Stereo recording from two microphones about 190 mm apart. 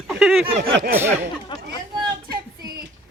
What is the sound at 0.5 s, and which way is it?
Speech, 50° right (ahead or behind).